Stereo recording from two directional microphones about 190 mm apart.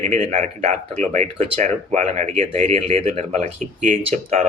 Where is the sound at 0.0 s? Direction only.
35° right (ahead or behind).